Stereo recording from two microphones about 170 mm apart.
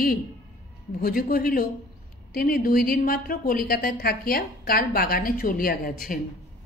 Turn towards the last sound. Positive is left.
turn(degrees=55)  # may be behind; listen again after turning